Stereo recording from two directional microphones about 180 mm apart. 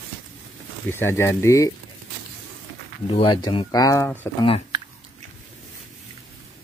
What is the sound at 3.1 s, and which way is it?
Speech, 30° left (ahead or behind).